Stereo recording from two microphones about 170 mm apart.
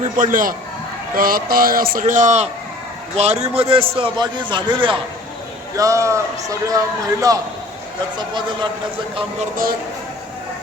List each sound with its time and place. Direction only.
0.0 s a man's voice: 50° right (ahead or behind); by 4.9 s 30° right (ahead or behind)
5.7 s a man's voice: 20° right (ahead or behind)